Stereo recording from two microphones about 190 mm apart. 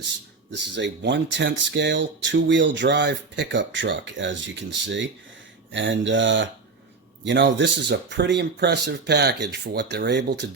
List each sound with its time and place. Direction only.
0.5 s speech: 70° right (ahead or behind)